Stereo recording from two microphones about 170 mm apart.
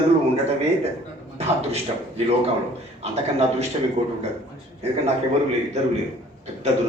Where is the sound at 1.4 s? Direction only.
35° right (ahead or behind).